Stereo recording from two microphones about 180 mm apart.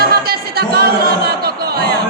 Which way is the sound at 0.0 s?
60° right (ahead or behind).